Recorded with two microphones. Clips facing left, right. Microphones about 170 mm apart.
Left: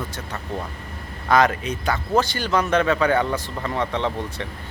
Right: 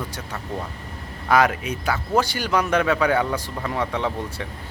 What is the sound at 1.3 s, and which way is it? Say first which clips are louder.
Speech: left 1 dB; 10° right (ahead or behind).